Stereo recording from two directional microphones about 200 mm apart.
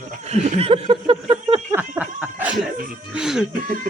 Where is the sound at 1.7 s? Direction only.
10° right (ahead or behind).